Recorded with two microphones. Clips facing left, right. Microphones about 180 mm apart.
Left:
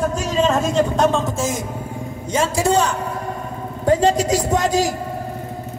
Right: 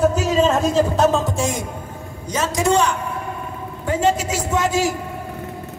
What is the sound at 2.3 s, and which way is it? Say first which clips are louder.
A woman's voice: left 1 dB; 30° left (ahead or behind).